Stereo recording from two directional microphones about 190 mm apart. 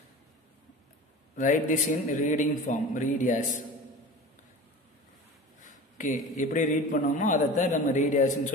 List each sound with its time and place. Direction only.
1.3 s a man's voice: 40° left (ahead or behind)
5.6 s a man's voice: 40° left (ahead or behind)